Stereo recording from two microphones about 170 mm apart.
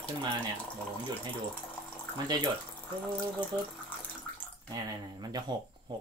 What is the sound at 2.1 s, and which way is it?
Speech, 25° right (ahead or behind).